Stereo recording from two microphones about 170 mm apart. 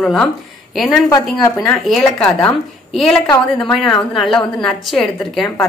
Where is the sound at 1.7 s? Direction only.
5° left (ahead or behind).